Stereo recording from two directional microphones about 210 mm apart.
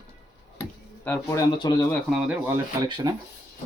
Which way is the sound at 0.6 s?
10° left (ahead or behind).